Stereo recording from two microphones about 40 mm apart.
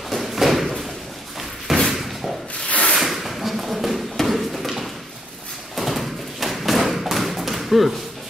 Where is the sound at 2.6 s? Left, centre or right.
Left.